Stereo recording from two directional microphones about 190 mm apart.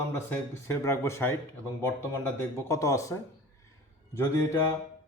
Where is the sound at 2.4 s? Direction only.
15° left (ahead or behind).